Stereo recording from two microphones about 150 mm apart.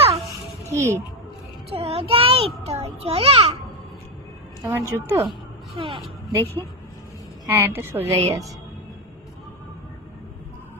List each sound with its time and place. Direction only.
0.7 s speech: 20° right (ahead or behind)
1.7 s a child's voice: 40° right (ahead or behind)
4.6 s a woman's voice: 15° right (ahead or behind)
5.7 s speech: 35° right (ahead or behind)
6.3 s speech: 15° left (ahead or behind)
7.4 s a woman's voice: 15° right (ahead or behind)